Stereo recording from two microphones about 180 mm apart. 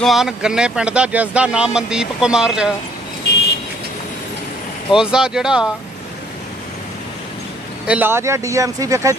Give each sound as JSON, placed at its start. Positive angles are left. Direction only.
{"t": 0.0, "sound": "speech", "side_deg": 0}
{"t": 4.9, "sound": "speech", "side_deg": -5}
{"t": 7.8, "sound": "speech", "side_deg": -10}